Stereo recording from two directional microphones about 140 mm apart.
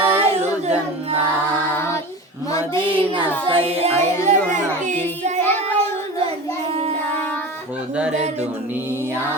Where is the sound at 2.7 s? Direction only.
40° right (ahead or behind).